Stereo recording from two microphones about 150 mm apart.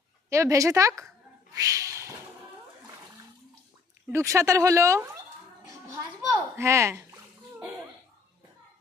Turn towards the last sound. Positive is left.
turn(degrees=-15)  # may be behind; listen again after turning